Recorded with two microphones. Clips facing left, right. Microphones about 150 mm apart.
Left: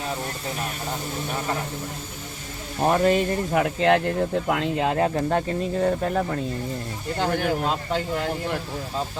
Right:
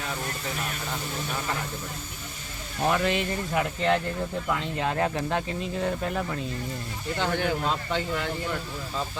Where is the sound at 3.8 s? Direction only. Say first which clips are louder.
Left 7 dB; 65° left (ahead or behind).